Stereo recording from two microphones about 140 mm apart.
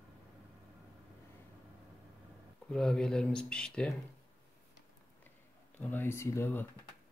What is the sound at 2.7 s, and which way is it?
Speech, 5° left (ahead or behind).